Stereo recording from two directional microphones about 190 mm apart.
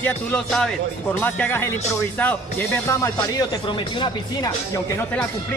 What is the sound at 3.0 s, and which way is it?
Speech, 20° left (ahead or behind).